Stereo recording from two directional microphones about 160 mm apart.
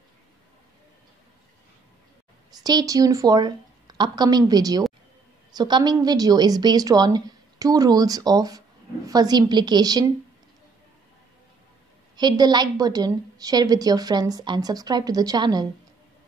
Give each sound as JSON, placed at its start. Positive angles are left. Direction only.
{"t": 2.6, "sound": "a woman's voice", "side_deg": -25}
{"t": 12.2, "sound": "a woman's voice", "side_deg": -25}